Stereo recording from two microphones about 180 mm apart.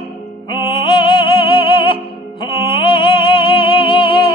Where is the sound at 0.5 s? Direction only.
25° left (ahead or behind).